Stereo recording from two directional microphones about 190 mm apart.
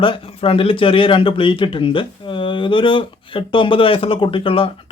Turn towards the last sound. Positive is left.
turn(degrees=30)  # may be behind; listen again after turning